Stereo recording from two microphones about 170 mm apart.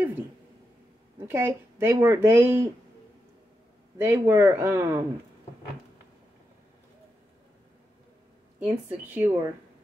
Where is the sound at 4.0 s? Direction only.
15° right (ahead or behind).